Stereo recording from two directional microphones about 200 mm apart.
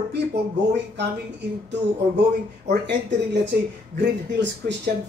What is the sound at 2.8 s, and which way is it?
Speech, 60° right (ahead or behind).